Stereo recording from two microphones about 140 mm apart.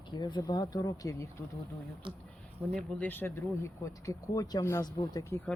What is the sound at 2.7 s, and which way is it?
Speech, 10° left (ahead or behind).